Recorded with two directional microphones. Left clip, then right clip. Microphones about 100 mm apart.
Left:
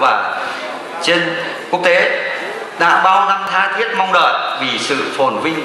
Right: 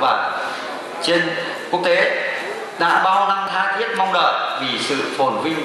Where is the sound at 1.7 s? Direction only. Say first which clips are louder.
Left 5 dB; 15° left (ahead or behind).